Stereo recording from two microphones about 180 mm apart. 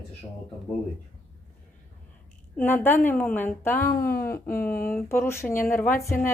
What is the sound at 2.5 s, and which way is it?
A woman's voice, 10° left (ahead or behind).